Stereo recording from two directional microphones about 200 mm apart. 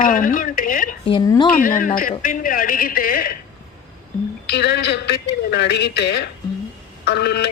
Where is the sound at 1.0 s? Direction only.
20° left (ahead or behind).